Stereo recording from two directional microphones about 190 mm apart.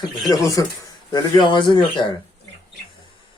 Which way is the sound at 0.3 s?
15° left (ahead or behind).